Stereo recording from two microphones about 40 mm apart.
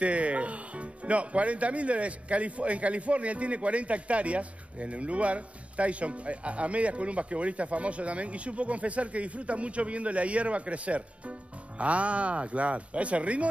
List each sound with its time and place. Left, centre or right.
0.0 s speech: right